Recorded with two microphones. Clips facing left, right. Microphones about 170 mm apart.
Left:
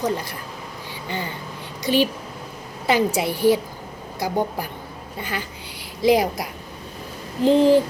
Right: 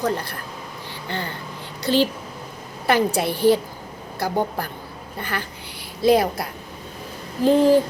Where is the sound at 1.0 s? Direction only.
15° left (ahead or behind).